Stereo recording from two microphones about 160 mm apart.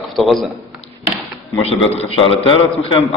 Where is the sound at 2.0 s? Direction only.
35° left (ahead or behind).